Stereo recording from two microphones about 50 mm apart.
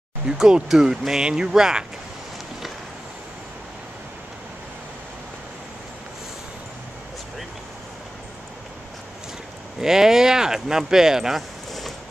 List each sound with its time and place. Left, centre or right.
0.3 s speech: centre
9.8 s speech: centre